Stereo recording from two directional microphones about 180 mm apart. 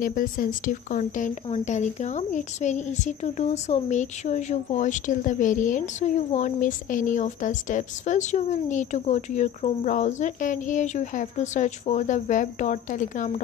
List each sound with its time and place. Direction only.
0.0 s speech: 50° left (ahead or behind)